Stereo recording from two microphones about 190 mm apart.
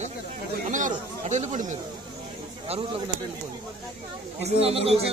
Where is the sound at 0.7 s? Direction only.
40° right (ahead or behind).